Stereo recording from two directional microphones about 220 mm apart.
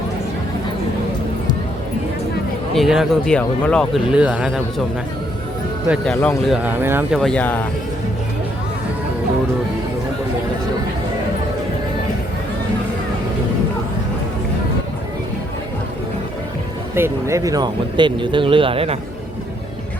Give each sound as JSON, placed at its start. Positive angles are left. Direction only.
{"t": 2.7, "sound": "speech", "side_deg": 0}
{"t": 5.9, "sound": "speech", "side_deg": 0}
{"t": 7.2, "sound": "speech", "side_deg": 5}
{"t": 16.9, "sound": "speech", "side_deg": -10}